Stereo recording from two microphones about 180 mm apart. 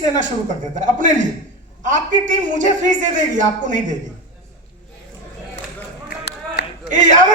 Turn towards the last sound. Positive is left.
turn(degrees=-45)  # may be behind; listen again after turning